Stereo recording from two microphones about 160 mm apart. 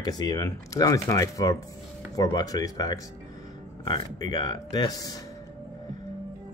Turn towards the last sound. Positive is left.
turn(degrees=20)  # may be behind; listen again after turning